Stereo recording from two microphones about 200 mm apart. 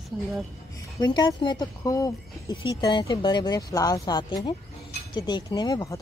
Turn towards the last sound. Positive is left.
turn(degrees=15)  # may be behind; listen again after turning